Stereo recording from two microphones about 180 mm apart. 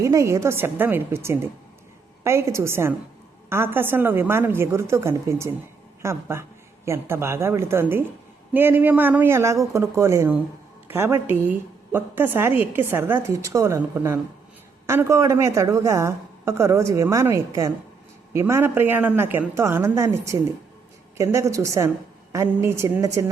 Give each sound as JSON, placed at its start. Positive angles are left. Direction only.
{"t": 0.0, "sound": "a woman's voice", "side_deg": -15}